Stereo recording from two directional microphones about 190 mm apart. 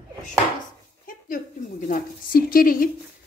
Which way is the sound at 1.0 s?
45° left (ahead or behind).